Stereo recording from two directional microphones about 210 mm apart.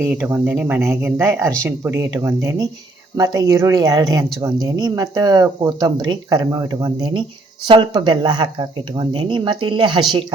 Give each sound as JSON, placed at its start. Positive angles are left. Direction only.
{"t": 0.0, "sound": "speech", "side_deg": -10}